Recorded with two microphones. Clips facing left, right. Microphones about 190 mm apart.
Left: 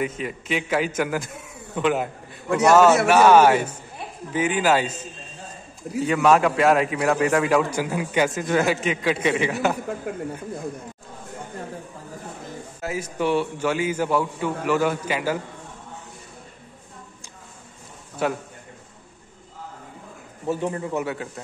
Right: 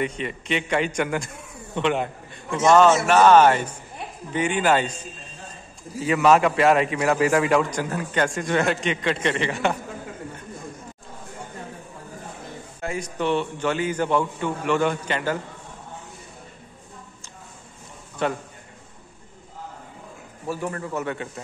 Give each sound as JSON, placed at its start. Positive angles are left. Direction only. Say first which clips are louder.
{"t": 0.0, "sound": "a man's voice", "louder": "even", "side_deg": 0}
{"t": 5.9, "sound": "a man's voice", "louder": "even", "side_deg": 0}
{"t": 12.8, "sound": "a man's voice", "louder": "left 1 dB", "side_deg": 5}
{"t": 18.2, "sound": "a man's voice", "louder": "left 1 dB", "side_deg": 5}
{"t": 20.4, "sound": "a man's voice", "louder": "left 3 dB", "side_deg": 20}